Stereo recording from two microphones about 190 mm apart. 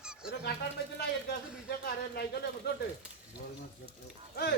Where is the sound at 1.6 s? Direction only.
55° left (ahead or behind).